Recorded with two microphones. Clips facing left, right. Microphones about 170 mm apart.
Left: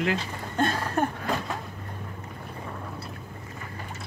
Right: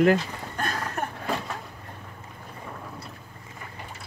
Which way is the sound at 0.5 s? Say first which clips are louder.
Left 6 dB; 25° left (ahead or behind).